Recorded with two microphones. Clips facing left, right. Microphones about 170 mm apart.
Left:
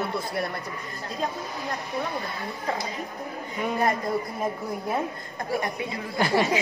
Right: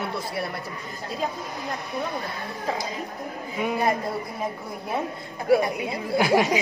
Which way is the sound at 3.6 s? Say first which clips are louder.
Right 1 dB; 5° right (ahead or behind).